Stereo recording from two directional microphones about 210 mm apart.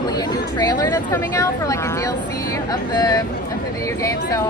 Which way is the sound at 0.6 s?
15° left (ahead or behind).